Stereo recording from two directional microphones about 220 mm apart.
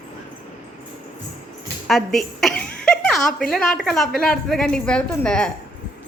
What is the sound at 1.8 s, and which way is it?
A woman's voice, centre (ahead or behind).